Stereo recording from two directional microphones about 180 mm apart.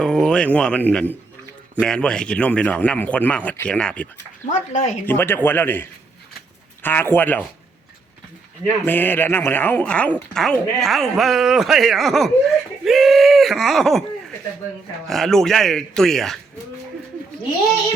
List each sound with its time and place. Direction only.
0.0 s speech: 5° left (ahead or behind)
4.5 s speech: 45° left (ahead or behind)
5.0 s speech: 10° left (ahead or behind)
8.6 s speech: 10° left (ahead or behind)
15.0 s speech: centre (ahead or behind)